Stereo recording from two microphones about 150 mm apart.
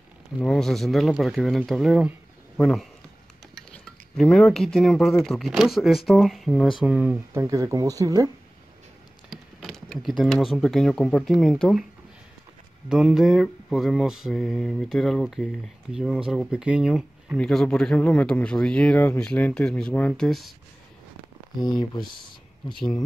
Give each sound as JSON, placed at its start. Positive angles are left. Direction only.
{"t": 0.4, "sound": "mantra", "side_deg": 5}
{"t": 2.5, "sound": "speech", "side_deg": 5}
{"t": 3.5, "sound": "cutlery", "side_deg": 5}
{"t": 6.8, "sound": "mantra", "side_deg": -5}
{"t": 7.3, "sound": "speech", "side_deg": -20}
{"t": 9.3, "sound": "speech", "side_deg": 0}
{"t": 12.8, "sound": "mantra", "side_deg": -5}
{"t": 17.4, "sound": "speech", "side_deg": 5}
{"t": 21.5, "sound": "mantra", "side_deg": 0}